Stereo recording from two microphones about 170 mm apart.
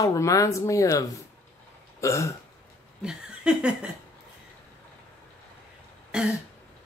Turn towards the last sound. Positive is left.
turn(degrees=-5)  # may be behind; listen again after turning